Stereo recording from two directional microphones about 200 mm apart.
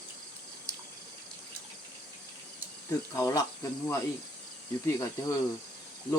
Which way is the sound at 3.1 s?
15° left (ahead or behind).